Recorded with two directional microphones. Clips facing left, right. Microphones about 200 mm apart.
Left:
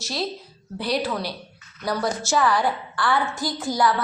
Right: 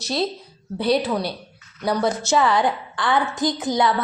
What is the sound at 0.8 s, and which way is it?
A woman's voice, 25° right (ahead or behind).